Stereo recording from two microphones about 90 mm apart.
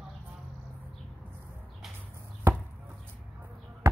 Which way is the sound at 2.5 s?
25° right (ahead or behind).